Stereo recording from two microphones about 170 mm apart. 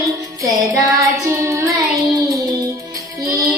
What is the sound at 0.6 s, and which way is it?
Child singing, 15° right (ahead or behind).